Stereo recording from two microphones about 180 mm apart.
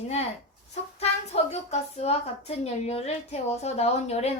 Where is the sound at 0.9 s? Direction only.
35° left (ahead or behind).